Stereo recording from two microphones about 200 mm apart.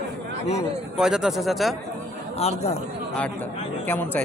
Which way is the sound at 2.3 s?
30° left (ahead or behind).